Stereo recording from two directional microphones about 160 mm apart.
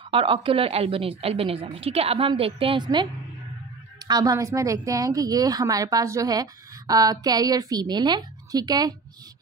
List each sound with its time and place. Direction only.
0.1 s a woman's voice: 35° right (ahead or behind)